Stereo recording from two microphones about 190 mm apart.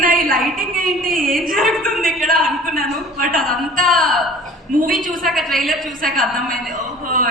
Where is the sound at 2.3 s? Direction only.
50° right (ahead or behind).